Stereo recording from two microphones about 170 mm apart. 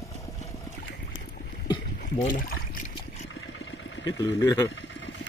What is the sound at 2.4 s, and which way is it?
Speech, 60° left (ahead or behind).